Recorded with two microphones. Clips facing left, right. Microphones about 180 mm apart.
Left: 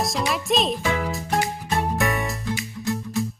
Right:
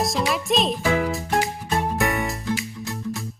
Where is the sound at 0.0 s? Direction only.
Centre (ahead or behind).